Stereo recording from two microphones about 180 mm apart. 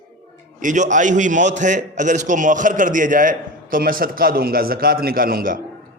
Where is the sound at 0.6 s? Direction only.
45° right (ahead or behind).